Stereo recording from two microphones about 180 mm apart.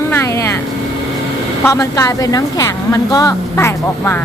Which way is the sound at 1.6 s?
20° left (ahead or behind).